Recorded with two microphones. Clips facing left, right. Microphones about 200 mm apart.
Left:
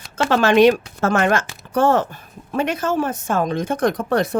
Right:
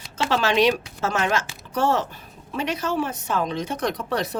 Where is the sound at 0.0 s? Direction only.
50° left (ahead or behind).